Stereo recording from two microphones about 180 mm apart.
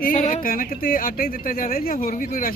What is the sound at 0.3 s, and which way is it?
Speech, 50° left (ahead or behind).